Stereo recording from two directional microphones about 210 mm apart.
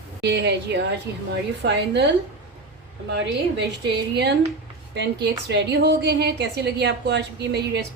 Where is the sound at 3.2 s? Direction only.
55° right (ahead or behind).